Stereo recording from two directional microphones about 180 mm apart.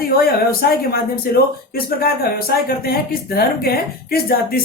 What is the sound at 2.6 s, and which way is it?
Speech, 60° left (ahead or behind).